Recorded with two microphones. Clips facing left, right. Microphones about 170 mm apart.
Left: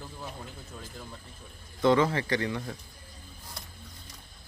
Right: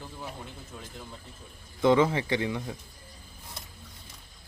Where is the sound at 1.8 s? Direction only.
15° right (ahead or behind).